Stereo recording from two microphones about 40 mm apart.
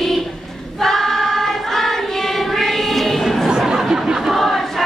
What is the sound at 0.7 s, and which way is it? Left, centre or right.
Choir, centre.